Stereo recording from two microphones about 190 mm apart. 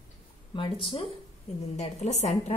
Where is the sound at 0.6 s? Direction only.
30° left (ahead or behind).